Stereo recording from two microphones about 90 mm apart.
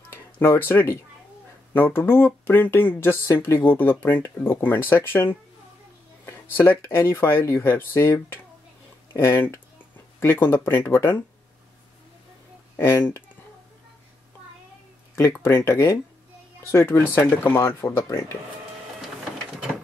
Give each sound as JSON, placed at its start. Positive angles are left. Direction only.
{"t": 0.1, "sound": "speech", "side_deg": 25}
{"t": 12.7, "sound": "speech", "side_deg": 25}
{"t": 15.1, "sound": "speech", "side_deg": 30}